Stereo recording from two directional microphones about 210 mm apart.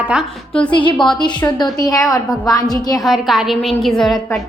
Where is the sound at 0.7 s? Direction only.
20° left (ahead or behind).